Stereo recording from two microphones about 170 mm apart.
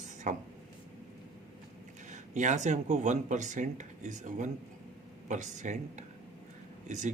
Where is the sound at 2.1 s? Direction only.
45° right (ahead or behind).